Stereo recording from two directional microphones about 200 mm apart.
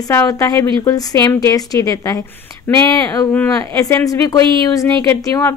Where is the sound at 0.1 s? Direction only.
15° left (ahead or behind).